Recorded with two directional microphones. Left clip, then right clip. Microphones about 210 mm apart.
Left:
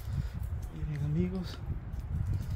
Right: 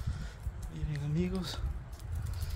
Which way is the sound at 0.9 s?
25° right (ahead or behind).